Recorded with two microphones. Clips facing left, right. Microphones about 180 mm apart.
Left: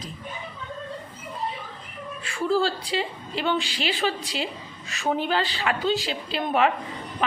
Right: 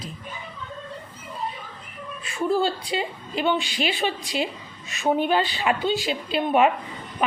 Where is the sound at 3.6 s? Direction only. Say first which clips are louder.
Right 1 dB; 35° left (ahead or behind).